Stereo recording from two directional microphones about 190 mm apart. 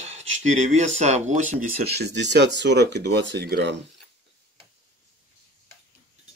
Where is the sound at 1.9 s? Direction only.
60° right (ahead or behind).